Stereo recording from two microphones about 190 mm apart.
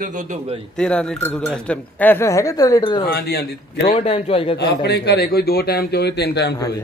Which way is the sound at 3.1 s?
55° left (ahead or behind).